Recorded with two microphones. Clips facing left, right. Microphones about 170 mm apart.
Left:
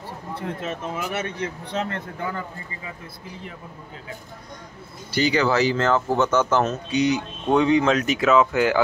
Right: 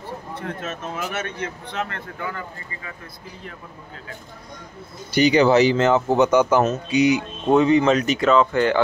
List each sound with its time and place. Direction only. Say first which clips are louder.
0.7 s speech: left 1 dB; 15° left (ahead or behind)
1.4 s speech: left 1 dB; 35° left (ahead or behind)
5.1 s speech: right 5 dB; 20° right (ahead or behind); by 8.8 s 5° left (ahead or behind)